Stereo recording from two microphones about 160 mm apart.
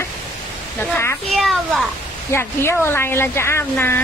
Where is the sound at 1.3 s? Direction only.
Centre (ahead or behind).